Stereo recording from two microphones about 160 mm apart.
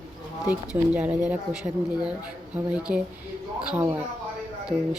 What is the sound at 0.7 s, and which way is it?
Speech, 15° right (ahead or behind).